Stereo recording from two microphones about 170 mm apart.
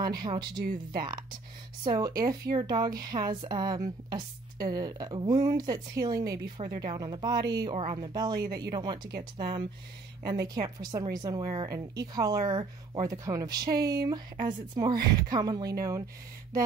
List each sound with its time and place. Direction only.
0.2 s a woman's voice: 25° right (ahead or behind)
1.8 s a woman's voice: 25° right (ahead or behind)